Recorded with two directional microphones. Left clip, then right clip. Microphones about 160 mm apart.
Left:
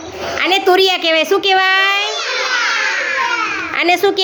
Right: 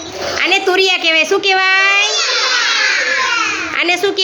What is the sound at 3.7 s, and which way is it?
Speech, 15° left (ahead or behind).